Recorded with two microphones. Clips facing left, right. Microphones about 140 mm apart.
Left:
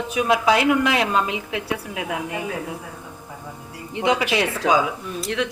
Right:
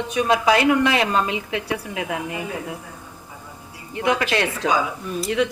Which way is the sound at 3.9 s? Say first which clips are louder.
Left 1 dB; 20° left (ahead or behind).